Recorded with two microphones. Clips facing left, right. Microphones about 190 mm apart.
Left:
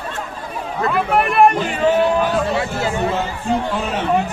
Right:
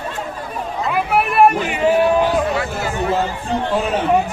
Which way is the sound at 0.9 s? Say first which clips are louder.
Left 1 dB; 5° right (ahead or behind).